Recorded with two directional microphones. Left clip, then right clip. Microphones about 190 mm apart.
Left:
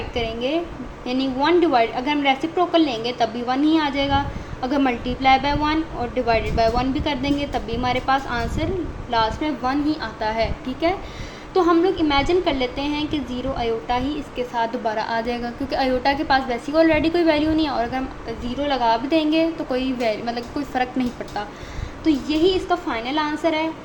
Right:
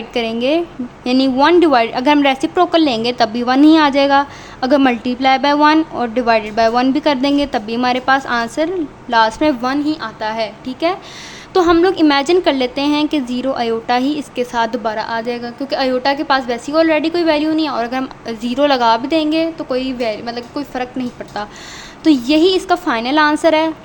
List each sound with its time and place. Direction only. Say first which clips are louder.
0.1 s a woman's voice: right 8 dB; 40° right (ahead or behind)
9.7 s a woman's voice: right 4 dB; 30° right (ahead or behind)
11.5 s a woman's voice: right 6 dB; 55° right (ahead or behind); by 21.1 s 20° right (ahead or behind)
22.0 s a woman's voice: right 7 dB; 50° right (ahead or behind)